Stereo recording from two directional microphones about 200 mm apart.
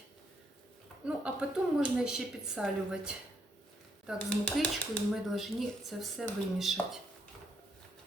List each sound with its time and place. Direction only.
1.0 s a woman's voice: 5° right (ahead or behind)
4.3 s a woman's voice: 5° left (ahead or behind)